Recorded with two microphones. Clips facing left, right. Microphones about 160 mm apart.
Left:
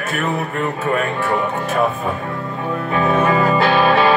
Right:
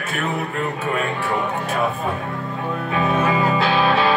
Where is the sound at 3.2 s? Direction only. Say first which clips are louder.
Left 4 dB; 55° left (ahead or behind).